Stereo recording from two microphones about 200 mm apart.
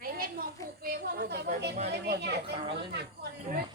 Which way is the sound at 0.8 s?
50° right (ahead or behind).